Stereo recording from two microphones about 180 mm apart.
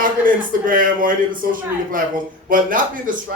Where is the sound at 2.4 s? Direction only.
50° right (ahead or behind).